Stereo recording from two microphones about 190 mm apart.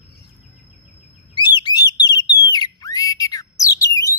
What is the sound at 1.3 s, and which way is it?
Bird, 25° left (ahead or behind).